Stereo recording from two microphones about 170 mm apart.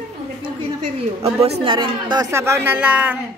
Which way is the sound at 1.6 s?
30° right (ahead or behind).